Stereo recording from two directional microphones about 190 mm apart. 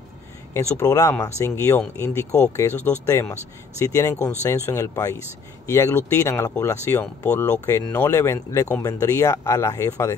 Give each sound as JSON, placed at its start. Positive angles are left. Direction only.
{"t": 0.5, "sound": "speech", "side_deg": 15}